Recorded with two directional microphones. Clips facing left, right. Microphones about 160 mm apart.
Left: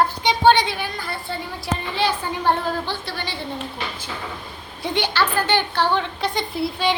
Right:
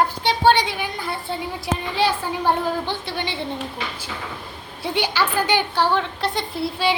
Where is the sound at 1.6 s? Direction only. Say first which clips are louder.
Right 1 dB; 5° right (ahead or behind); by 3.4 s 20° right (ahead or behind).